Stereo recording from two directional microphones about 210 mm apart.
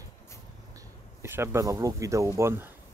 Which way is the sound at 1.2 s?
10° right (ahead or behind).